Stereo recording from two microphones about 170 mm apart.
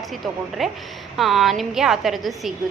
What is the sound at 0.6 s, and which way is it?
A woman's voice, centre (ahead or behind).